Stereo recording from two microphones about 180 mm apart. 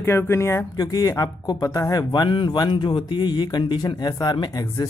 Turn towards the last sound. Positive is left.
turn(degrees=20)  # may be behind; listen again after turning